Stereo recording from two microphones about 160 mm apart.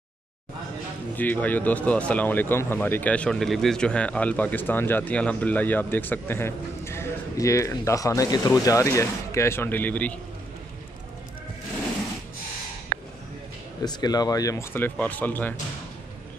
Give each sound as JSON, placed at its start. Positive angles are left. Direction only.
{"t": 1.1, "sound": "speech", "side_deg": 10}
{"t": 13.8, "sound": "speech", "side_deg": 25}